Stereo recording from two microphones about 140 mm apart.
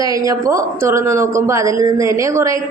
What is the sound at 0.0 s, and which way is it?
Speech, 25° right (ahead or behind).